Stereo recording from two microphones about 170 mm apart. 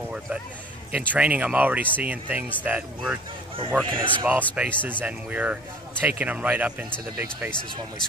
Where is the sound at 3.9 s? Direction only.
30° right (ahead or behind).